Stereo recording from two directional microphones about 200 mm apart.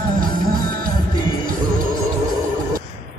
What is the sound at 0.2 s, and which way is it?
Music, 45° right (ahead or behind).